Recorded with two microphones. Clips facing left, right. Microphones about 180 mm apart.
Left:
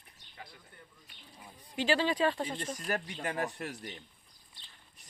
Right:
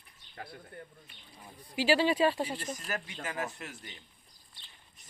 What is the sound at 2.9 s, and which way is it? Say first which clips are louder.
Speech: left 4 dB; 35° left (ahead or behind).